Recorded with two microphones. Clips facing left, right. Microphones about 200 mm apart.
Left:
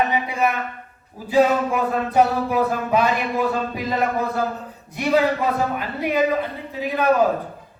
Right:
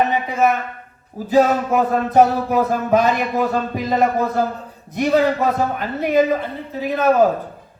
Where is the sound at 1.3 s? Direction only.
45° right (ahead or behind).